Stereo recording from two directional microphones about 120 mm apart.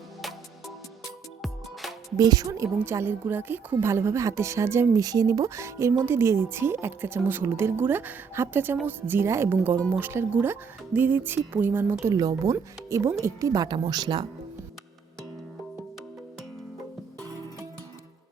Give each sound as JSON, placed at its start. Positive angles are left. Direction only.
{"t": 1.4, "sound": "music", "side_deg": 0}
{"t": 2.1, "sound": "speech", "side_deg": -30}